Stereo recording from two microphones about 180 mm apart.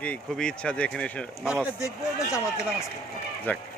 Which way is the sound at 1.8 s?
15° left (ahead or behind).